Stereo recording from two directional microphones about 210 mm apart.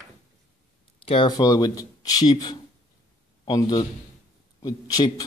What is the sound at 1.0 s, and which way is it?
A man's voice, 25° left (ahead or behind).